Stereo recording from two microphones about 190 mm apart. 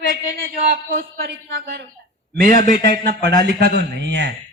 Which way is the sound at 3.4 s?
60° right (ahead or behind).